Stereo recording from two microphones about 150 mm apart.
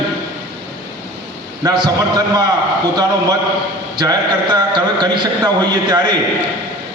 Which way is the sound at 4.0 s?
30° right (ahead or behind).